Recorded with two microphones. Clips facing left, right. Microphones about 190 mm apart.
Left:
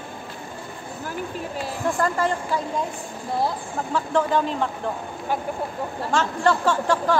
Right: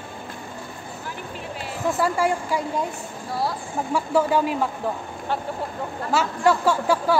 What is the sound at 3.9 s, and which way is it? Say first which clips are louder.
Speech: right 1 dB; 10° right (ahead or behind).